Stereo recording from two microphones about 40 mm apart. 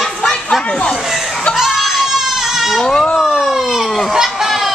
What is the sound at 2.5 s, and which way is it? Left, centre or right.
Sheep, centre.